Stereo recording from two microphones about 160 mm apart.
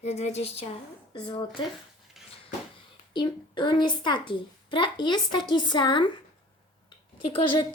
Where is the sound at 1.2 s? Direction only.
30° left (ahead or behind).